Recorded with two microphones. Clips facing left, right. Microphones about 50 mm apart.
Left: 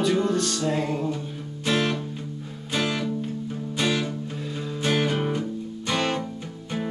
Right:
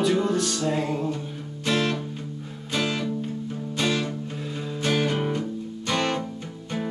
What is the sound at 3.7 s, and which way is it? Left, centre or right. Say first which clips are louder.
Music: even; centre.